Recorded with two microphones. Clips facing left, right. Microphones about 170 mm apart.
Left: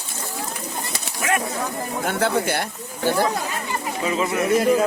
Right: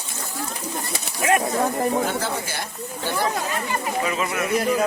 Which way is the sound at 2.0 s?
60° left (ahead or behind).